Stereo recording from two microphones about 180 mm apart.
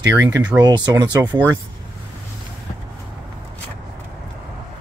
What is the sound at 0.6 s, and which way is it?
Speech, 25° right (ahead or behind).